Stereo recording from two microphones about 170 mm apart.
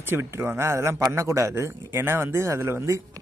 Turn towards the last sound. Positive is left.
turn(degrees=-20)  # may be behind; listen again after turning